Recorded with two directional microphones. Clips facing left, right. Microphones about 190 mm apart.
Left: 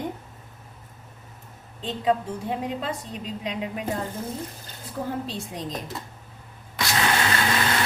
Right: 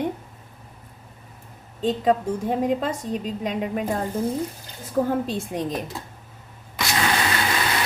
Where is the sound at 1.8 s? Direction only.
45° right (ahead or behind).